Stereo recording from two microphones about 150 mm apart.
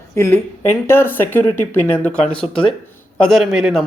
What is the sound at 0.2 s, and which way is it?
Speech, 15° left (ahead or behind).